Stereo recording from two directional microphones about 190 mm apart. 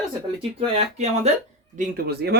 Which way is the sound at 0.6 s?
35° right (ahead or behind).